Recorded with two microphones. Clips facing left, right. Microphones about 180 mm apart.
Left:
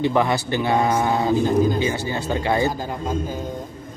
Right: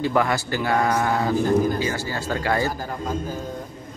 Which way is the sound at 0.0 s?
20° left (ahead or behind).